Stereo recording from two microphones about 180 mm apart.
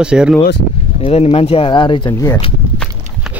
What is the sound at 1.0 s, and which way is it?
Speech, 35° left (ahead or behind).